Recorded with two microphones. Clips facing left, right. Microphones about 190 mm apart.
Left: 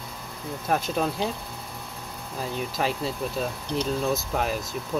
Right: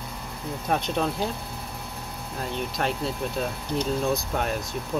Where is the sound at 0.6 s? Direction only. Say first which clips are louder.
Even; 5° left (ahead or behind).